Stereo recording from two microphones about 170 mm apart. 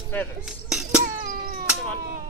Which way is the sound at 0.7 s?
5° right (ahead or behind).